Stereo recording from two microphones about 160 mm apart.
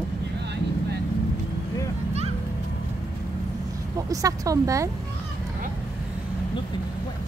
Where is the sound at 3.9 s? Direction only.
20° right (ahead or behind).